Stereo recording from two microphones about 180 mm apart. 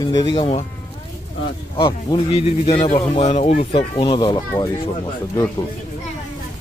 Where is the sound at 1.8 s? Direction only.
30° left (ahead or behind).